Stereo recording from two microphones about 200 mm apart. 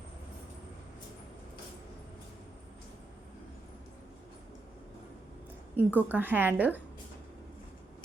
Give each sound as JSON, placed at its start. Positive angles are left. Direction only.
{"t": 5.7, "sound": "a woman's voice", "side_deg": -10}